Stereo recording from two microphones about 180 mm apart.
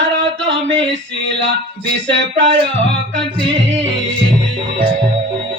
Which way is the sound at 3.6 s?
90° right.